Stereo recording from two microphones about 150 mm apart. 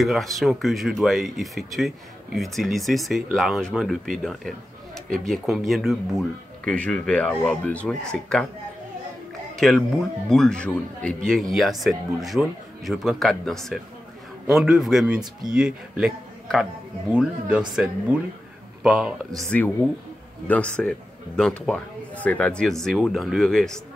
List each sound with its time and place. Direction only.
0.0 s speech: centre (ahead or behind)
9.6 s speech: centre (ahead or behind)
18.8 s speech: 5° right (ahead or behind)
19.5 s a man's voice: 10° left (ahead or behind)